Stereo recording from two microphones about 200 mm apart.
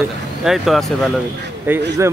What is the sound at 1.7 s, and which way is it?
Speech, 10° right (ahead or behind).